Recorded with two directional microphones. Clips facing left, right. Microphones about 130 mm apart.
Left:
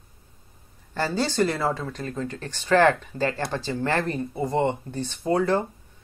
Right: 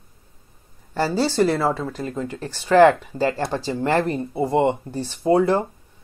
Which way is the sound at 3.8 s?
25° right (ahead or behind).